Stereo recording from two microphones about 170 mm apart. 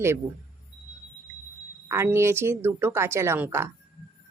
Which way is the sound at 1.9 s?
15° right (ahead or behind).